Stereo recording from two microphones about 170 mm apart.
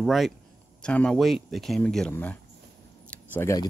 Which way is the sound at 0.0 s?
Centre (ahead or behind).